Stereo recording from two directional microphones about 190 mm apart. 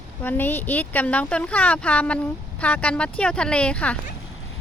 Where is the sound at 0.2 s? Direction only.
10° left (ahead or behind).